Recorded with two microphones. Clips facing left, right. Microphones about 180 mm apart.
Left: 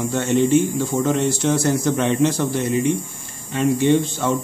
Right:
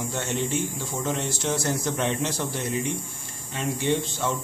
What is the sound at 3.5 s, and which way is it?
Speech, 60° left (ahead or behind).